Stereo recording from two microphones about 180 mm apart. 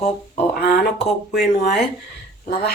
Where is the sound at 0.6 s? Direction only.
65° left (ahead or behind).